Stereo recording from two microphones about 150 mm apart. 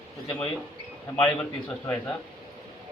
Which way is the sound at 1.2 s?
10° left (ahead or behind).